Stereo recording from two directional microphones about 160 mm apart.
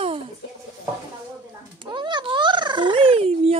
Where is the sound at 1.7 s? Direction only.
30° right (ahead or behind).